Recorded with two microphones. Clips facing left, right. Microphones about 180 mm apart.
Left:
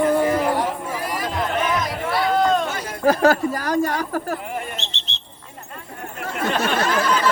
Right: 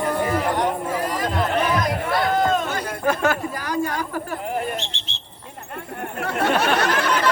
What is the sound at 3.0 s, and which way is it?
Speech, 35° left (ahead or behind).